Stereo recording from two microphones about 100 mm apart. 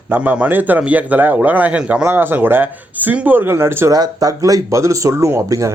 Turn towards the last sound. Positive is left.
turn(degrees=-30)  # may be behind; listen again after turning